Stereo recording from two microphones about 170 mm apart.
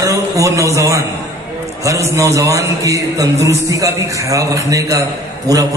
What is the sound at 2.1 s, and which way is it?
Speech, 20° right (ahead or behind).